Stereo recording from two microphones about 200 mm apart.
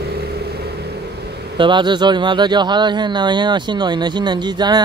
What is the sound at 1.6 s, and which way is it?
Speech, 25° right (ahead or behind).